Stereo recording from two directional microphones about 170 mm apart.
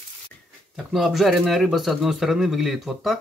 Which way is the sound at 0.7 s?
Centre (ahead or behind).